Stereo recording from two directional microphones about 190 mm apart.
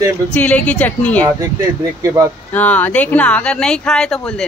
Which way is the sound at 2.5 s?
10° left (ahead or behind).